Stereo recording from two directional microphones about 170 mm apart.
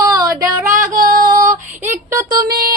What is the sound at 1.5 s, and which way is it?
Speech, 45° right (ahead or behind).